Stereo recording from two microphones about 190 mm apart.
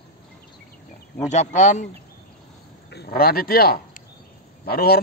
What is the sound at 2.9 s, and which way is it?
A man's voice, 55° left (ahead or behind).